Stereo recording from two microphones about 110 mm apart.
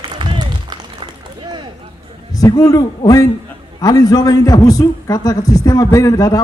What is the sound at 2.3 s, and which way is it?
A man's voice, 35° left (ahead or behind).